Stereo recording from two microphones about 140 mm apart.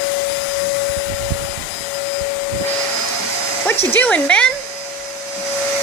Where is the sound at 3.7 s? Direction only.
15° left (ahead or behind).